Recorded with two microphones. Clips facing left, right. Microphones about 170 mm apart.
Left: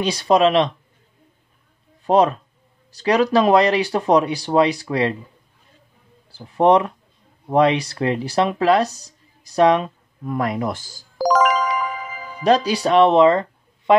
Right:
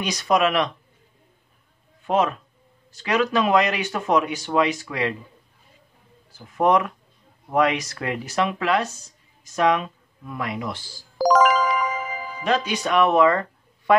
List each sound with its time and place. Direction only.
0.0 s speech: 30° left (ahead or behind)
2.0 s speech: 35° left (ahead or behind)
6.3 s speech: 30° left (ahead or behind)
11.1 s music: centre (ahead or behind)
12.4 s speech: 35° left (ahead or behind)